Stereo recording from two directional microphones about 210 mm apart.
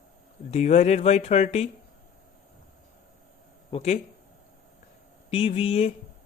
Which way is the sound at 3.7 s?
30° left (ahead or behind).